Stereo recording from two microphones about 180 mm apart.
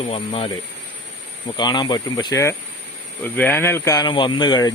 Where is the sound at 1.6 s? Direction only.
25° left (ahead or behind).